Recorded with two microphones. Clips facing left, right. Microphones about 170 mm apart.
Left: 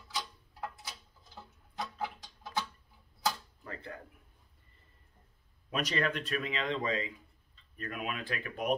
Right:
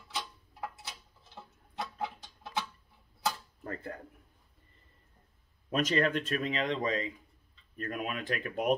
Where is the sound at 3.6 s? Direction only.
45° right (ahead or behind).